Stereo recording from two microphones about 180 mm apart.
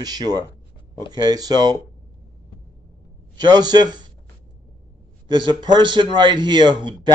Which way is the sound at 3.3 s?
25° right (ahead or behind).